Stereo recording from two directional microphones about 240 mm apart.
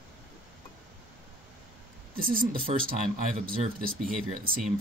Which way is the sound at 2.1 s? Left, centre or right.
Right.